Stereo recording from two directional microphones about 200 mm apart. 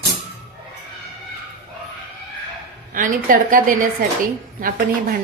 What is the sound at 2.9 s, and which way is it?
A woman's voice, 40° right (ahead or behind).